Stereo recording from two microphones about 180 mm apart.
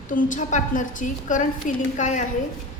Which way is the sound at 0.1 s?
45° left (ahead or behind).